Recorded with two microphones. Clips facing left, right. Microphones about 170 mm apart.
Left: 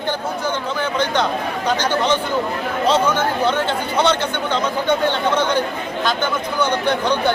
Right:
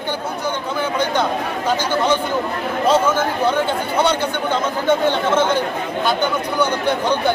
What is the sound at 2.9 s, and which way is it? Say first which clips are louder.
Speech: right 1 dB; 10° right (ahead or behind).